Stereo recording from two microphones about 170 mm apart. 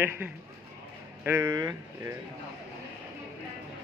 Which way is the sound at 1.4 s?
20° right (ahead or behind).